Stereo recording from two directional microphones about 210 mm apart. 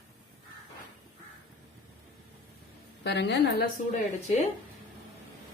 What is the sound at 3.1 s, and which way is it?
Speech, 55° left (ahead or behind).